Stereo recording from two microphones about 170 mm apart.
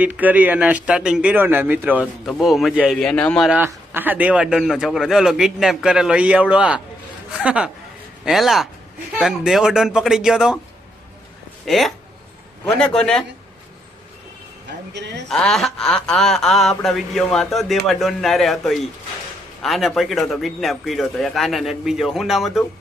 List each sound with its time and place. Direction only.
0.0 s a man's voice: 10° right (ahead or behind)
11.6 s a man's voice: centre (ahead or behind)
14.9 s a woman's voice: 90° right
15.3 s a man's voice: centre (ahead or behind)